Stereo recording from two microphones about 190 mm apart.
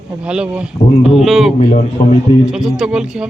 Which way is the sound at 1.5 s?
40° left (ahead or behind).